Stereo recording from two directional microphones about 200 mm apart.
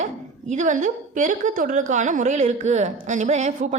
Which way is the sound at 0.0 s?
35° right (ahead or behind).